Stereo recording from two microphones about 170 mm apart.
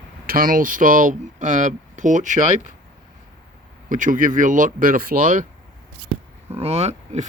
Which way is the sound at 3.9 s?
50° right (ahead or behind).